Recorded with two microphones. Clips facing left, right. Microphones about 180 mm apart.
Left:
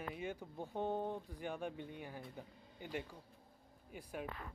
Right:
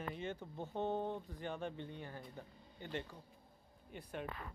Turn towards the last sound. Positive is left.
turn(degrees=5)  # may be behind; listen again after turning